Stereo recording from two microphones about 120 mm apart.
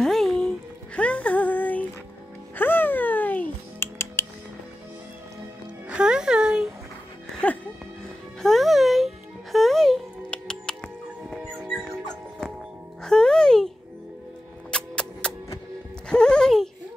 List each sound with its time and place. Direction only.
0.0 s music: 5° left (ahead or behind); by 4.3 s 20° left (ahead or behind)
5.9 s music: 10° right (ahead or behind)
7.4 s music: 10° left (ahead or behind)
14.7 s music: 5° left (ahead or behind)